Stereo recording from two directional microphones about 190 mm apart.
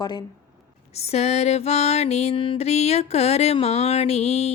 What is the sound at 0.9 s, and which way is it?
Mantra, 35° left (ahead or behind).